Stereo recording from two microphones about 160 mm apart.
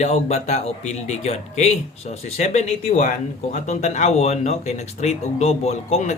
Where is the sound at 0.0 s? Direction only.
45° left (ahead or behind).